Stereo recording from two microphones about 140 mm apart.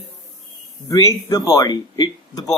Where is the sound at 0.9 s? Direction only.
25° left (ahead or behind).